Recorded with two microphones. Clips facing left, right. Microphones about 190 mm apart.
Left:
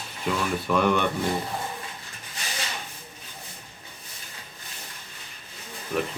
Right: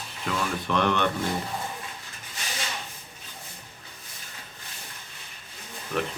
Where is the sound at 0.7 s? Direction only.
10° left (ahead or behind).